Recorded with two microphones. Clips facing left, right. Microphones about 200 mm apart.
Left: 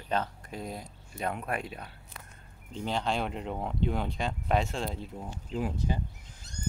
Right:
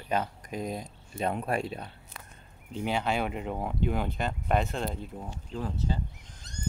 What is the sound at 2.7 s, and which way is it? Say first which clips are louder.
Speech: right 2 dB; 10° right (ahead or behind).